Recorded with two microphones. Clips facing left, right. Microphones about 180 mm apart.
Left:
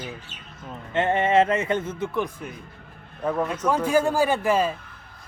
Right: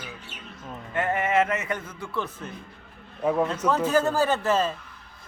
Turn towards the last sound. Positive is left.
turn(degrees=10)  # may be behind; listen again after turning